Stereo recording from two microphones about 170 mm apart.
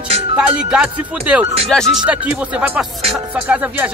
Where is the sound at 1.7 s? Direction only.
5° left (ahead or behind).